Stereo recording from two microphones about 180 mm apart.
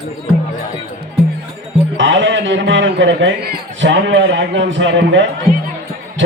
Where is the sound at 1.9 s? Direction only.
90° right.